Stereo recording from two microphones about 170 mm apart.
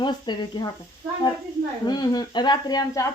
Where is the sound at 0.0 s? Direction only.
25° left (ahead or behind).